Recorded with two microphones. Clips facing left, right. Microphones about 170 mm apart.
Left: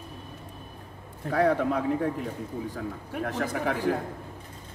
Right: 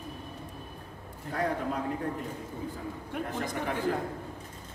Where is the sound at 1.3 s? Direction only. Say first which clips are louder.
Left 7 dB; 70° left (ahead or behind).